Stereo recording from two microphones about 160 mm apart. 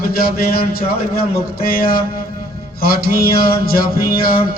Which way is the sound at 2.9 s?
70° left (ahead or behind).